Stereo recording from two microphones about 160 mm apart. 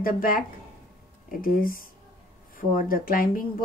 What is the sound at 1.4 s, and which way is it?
Speech, 65° left (ahead or behind).